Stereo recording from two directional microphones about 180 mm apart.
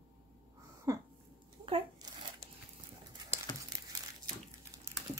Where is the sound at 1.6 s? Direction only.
30° right (ahead or behind).